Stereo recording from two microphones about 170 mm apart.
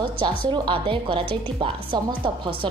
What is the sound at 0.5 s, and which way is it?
A woman's voice, 30° right (ahead or behind).